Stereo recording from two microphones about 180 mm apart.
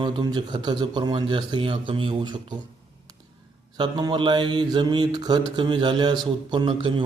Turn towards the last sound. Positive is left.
turn(degrees=-25)  # may be behind; listen again after turning